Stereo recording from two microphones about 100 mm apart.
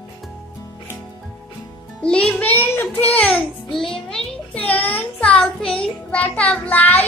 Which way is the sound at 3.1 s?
15° left (ahead or behind).